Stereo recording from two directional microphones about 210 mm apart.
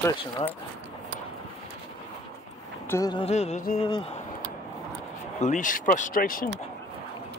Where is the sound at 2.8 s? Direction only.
15° left (ahead or behind).